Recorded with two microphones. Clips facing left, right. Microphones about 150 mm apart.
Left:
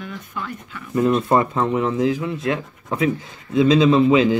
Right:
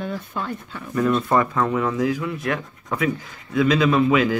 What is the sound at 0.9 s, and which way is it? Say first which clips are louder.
Speech: left 2 dB; 25° left (ahead or behind).